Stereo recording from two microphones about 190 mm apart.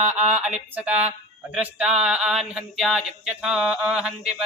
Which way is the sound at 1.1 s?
5° right (ahead or behind).